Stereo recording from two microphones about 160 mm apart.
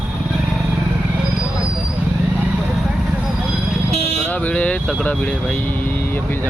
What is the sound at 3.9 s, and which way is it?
Vehicle, 40° right (ahead or behind).